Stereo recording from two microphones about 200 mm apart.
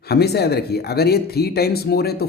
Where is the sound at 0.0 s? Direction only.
55° left (ahead or behind).